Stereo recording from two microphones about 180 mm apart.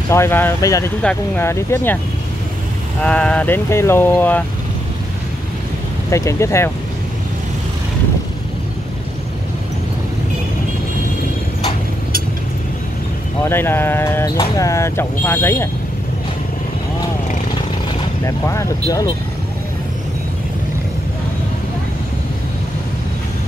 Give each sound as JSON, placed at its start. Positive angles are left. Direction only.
{"t": 0.1, "sound": "speech", "side_deg": 15}
{"t": 3.0, "sound": "speech", "side_deg": 5}
{"t": 6.0, "sound": "speech", "side_deg": 15}
{"t": 13.4, "sound": "speech", "side_deg": 10}
{"t": 18.2, "sound": "speech", "side_deg": 15}